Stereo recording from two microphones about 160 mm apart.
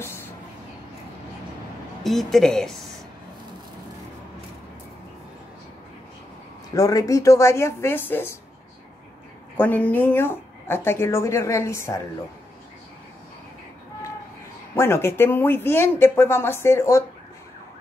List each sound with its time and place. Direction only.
0.0 s vehicle: 15° left (ahead or behind)
2.0 s a woman's voice: centre (ahead or behind)
6.7 s speech: 20° left (ahead or behind)
9.6 s speech: 10° left (ahead or behind)
14.8 s speech: 15° left (ahead or behind)